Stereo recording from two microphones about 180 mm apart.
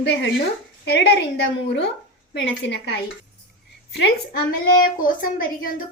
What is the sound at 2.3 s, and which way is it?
Speech, 75° left (ahead or behind).